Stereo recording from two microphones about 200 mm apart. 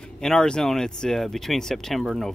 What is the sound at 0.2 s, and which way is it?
Speech, 5° left (ahead or behind).